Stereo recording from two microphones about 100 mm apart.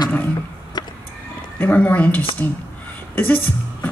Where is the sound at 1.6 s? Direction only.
15° left (ahead or behind).